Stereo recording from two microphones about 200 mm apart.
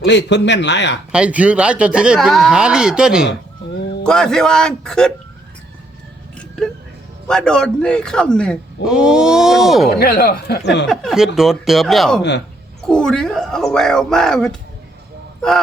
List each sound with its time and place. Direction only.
0.0 s a man's voice: 60° left (ahead or behind)
1.1 s a man's voice: 5° right (ahead or behind)
7.3 s a man's voice: 5° left (ahead or behind)
10.0 s speech: 50° left (ahead or behind)
10.8 s a man's voice: centre (ahead or behind)